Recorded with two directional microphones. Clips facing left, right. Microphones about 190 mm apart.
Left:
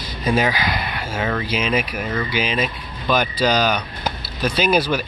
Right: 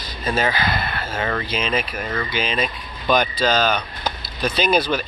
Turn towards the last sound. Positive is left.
turn(degrees=10)  # may be behind; listen again after turning